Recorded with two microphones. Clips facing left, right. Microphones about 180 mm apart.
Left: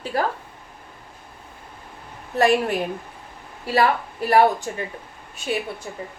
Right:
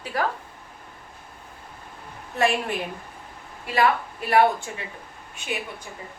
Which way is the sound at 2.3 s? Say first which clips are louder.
Left 5 dB; 35° left (ahead or behind).